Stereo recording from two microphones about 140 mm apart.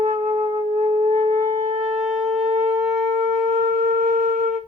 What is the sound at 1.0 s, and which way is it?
Wind instrument, 55° right (ahead or behind).